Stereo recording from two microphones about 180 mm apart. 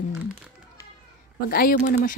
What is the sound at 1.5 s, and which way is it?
Speech, 50° left (ahead or behind).